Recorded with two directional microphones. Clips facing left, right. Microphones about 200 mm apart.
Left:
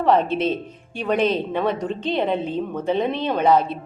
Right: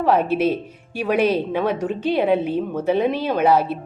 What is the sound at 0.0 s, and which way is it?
A woman's voice, 5° right (ahead or behind).